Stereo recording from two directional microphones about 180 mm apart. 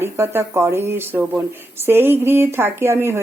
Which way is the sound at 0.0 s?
15° right (ahead or behind).